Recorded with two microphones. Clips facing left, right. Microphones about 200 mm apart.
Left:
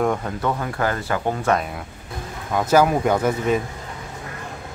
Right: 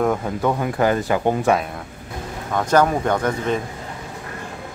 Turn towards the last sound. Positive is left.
turn(degrees=5)  # may be behind; listen again after turning